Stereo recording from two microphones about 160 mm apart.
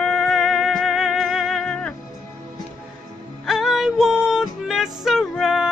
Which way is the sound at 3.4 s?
Centre (ahead or behind).